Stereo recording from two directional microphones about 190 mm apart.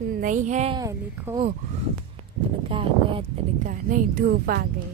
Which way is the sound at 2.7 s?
25° right (ahead or behind).